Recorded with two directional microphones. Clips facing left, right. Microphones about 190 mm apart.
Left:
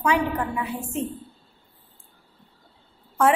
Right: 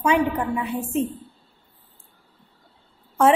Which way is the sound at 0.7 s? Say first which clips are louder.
Right 5 dB; 20° right (ahead or behind).